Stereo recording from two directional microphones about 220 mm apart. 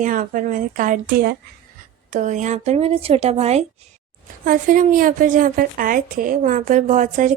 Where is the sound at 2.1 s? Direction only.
35° right (ahead or behind).